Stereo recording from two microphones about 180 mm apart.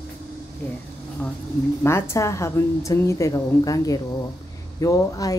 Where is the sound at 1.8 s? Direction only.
15° left (ahead or behind).